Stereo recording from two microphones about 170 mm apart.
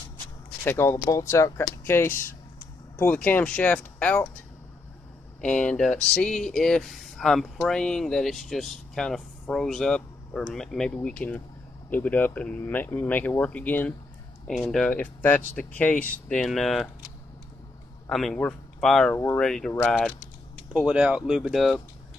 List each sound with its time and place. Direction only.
0.7 s speech: 15° left (ahead or behind)
5.4 s speech: 5° left (ahead or behind)
18.0 s speech: 5° left (ahead or behind)
19.1 s speech: 15° left (ahead or behind)
19.4 s speech: 5° left (ahead or behind)
20.7 s speech: 5° right (ahead or behind)